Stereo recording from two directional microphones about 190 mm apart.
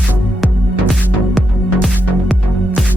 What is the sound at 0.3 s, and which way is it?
Music, centre (ahead or behind).